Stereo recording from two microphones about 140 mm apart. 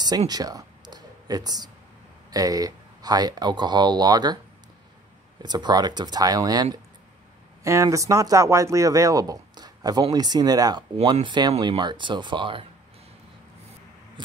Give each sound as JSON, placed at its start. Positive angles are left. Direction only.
{"t": 0.3, "sound": "a sound", "side_deg": -25}
{"t": 2.3, "sound": "speech", "side_deg": -25}
{"t": 5.4, "sound": "speech", "side_deg": -30}